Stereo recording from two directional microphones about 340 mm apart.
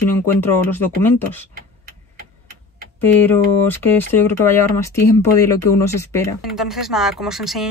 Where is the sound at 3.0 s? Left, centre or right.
Centre.